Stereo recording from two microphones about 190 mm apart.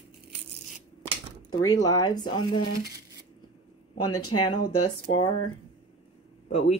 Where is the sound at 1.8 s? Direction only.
20° left (ahead or behind).